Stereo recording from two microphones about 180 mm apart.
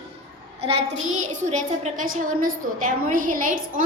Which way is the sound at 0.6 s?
35° right (ahead or behind).